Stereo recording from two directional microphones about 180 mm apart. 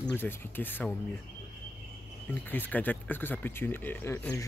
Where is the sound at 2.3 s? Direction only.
10° left (ahead or behind).